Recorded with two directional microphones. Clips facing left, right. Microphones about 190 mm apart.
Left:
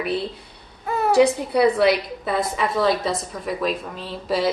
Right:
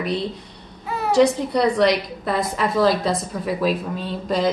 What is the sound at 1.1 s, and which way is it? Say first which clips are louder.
A woman's voice: right 1 dB; 5° left (ahead or behind).